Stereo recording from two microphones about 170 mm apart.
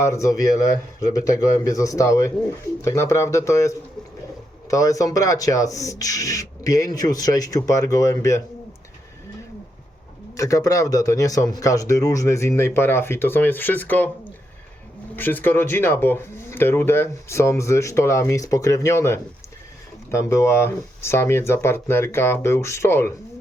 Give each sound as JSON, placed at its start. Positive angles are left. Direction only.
{"t": 0.0, "sound": "a man's voice", "side_deg": 20}
{"t": 10.3, "sound": "a man's voice", "side_deg": 20}
{"t": 15.1, "sound": "speech", "side_deg": 10}